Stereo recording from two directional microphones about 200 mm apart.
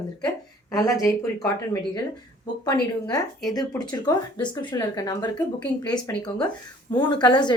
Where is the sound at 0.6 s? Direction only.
15° left (ahead or behind).